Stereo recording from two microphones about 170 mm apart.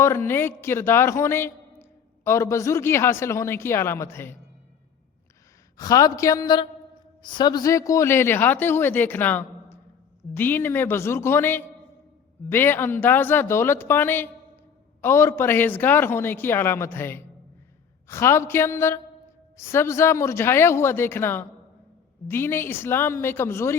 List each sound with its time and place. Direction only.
0.0 s a man's voice: 15° left (ahead or behind)
5.7 s a woman's voice: 20° left (ahead or behind)